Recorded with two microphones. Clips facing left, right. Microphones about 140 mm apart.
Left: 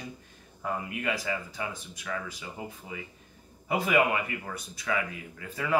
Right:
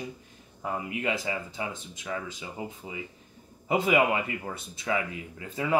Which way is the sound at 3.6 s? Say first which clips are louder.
Right 2 dB; 20° right (ahead or behind).